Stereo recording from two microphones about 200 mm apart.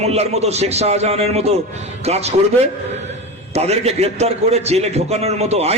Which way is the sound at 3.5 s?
30° right (ahead or behind).